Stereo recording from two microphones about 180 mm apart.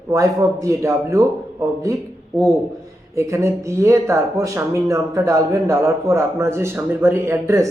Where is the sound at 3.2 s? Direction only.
15° right (ahead or behind).